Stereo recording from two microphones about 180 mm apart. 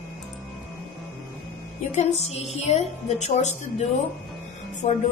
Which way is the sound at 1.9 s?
35° left (ahead or behind).